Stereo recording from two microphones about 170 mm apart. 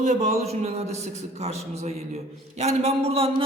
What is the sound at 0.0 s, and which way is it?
Speech, 40° right (ahead or behind).